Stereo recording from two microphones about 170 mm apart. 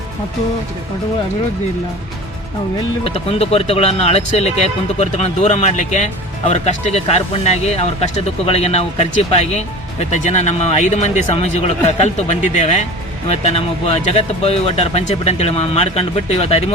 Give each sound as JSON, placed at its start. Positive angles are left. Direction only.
{"t": 3.0, "sound": "speech", "side_deg": 35}